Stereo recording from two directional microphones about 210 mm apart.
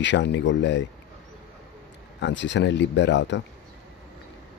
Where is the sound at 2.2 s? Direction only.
60° left (ahead or behind).